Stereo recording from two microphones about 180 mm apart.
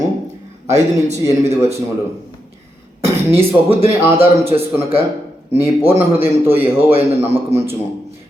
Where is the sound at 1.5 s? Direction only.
15° right (ahead or behind).